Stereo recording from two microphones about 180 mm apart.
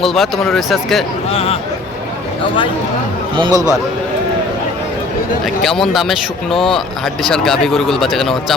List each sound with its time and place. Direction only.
0.0 s speech: centre (ahead or behind)
1.3 s speech: 35° left (ahead or behind)
3.3 s a man's voice: 20° right (ahead or behind)
5.6 s speech: centre (ahead or behind)